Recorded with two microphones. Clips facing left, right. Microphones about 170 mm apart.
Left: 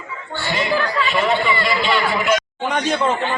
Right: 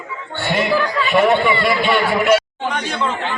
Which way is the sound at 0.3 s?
55° right (ahead or behind).